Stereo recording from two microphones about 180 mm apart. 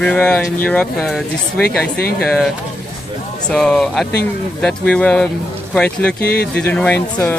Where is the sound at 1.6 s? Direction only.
60° left (ahead or behind).